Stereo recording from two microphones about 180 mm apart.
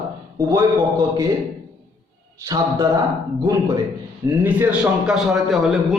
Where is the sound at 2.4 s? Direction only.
20° right (ahead or behind).